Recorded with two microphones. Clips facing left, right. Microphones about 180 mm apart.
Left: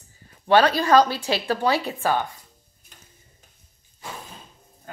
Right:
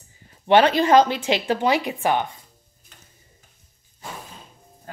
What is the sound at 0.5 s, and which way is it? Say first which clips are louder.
Speech: right 2 dB; 20° right (ahead or behind).